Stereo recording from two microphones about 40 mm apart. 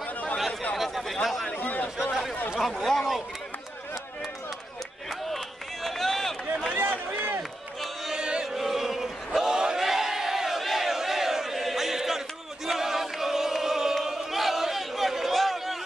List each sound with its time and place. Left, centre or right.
0.7 s chatter: centre
1.2 s speech: centre
1.6 s chatter: left
2.6 s speech: centre
5.9 s run: centre
6.7 s a sound: right
8.1 s chant: right
8.5 s chant: centre
9.8 s crowd: centre
12.6 s choir: centre
14.0 s a sound: centre